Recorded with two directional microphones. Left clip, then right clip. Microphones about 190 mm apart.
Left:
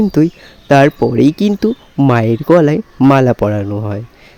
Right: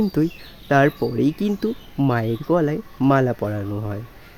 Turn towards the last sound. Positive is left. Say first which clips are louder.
# left 10 dB
turn(degrees=30)  # may be behind; listen again after turning